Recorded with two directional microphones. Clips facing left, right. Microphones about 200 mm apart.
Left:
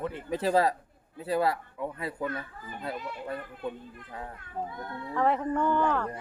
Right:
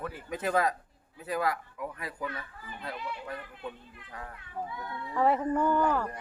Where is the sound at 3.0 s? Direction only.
45° left (ahead or behind).